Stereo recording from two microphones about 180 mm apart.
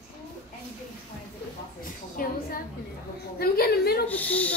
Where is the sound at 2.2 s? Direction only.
50° left (ahead or behind).